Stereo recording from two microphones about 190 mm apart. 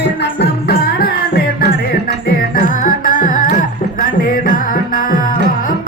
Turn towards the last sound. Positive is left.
turn(degrees=45)  # may be behind; listen again after turning